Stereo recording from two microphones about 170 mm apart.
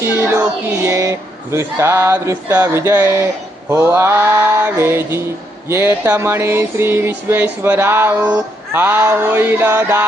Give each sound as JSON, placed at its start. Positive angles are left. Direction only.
{"t": 0.0, "sound": "speech", "side_deg": -15}